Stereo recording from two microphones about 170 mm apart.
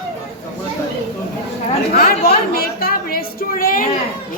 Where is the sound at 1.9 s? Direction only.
60° left (ahead or behind).